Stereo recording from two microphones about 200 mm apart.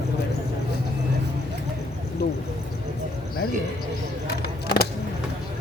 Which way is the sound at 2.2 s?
55° left (ahead or behind).